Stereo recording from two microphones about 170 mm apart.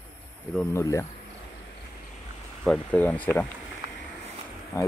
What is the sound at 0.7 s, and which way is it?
Speech, 20° left (ahead or behind).